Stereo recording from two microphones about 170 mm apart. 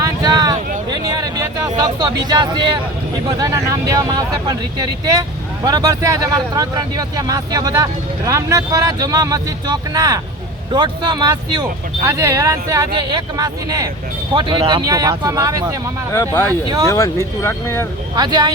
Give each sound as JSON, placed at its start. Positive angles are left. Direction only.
{"t": 0.0, "sound": "a sound", "side_deg": -20}
{"t": 3.2, "sound": "speech", "side_deg": -20}
{"t": 16.1, "sound": "speech", "side_deg": 15}
{"t": 18.1, "sound": "speech", "side_deg": -25}